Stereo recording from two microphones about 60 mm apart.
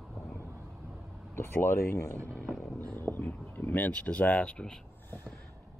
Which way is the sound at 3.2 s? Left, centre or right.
Left.